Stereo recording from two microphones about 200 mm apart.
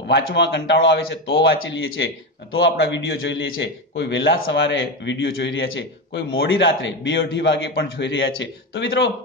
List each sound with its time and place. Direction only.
0.1 s a man's voice: 60° left (ahead or behind)